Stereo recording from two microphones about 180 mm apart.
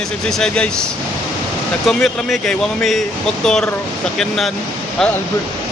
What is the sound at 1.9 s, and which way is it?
Speech, centre (ahead or behind).